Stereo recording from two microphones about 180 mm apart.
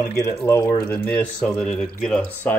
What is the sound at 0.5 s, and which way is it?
Speech, 10° left (ahead or behind).